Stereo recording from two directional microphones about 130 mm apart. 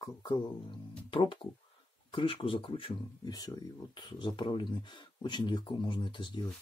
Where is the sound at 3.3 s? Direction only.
30° left (ahead or behind).